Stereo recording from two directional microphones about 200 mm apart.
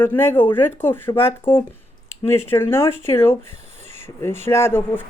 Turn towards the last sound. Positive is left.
turn(degrees=10)  # may be behind; listen again after turning